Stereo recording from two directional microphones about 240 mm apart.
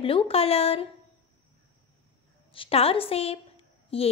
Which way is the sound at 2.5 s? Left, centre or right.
Left.